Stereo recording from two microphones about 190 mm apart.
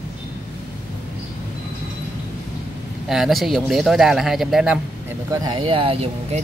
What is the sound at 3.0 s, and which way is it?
Speech, centre (ahead or behind).